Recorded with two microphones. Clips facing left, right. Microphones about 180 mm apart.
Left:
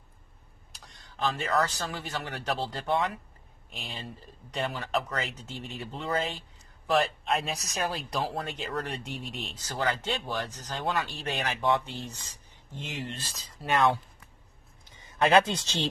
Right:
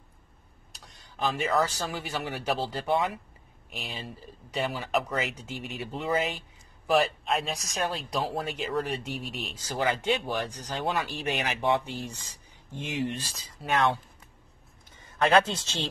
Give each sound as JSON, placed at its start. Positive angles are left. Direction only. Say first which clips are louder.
{"t": 1.2, "sound": "speech", "louder": "right 1 dB", "side_deg": -15}
{"t": 6.9, "sound": "speech", "louder": "right 2 dB", "side_deg": 0}
{"t": 13.6, "sound": "speech", "louder": "left 1 dB", "side_deg": 0}
{"t": 15.2, "sound": "speech", "louder": "even", "side_deg": 15}